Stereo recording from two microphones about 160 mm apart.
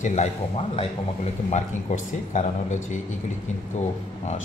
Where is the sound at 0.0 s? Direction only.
45° left (ahead or behind).